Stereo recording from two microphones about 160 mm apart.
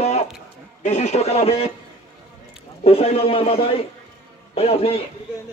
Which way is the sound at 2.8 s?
35° left (ahead or behind).